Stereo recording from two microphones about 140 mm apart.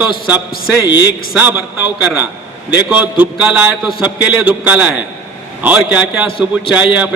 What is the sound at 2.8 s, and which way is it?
A man's voice, 10° right (ahead or behind).